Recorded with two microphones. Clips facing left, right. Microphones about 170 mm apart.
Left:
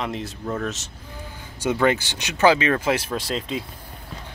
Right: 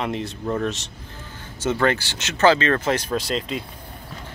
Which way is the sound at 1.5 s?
15° left (ahead or behind).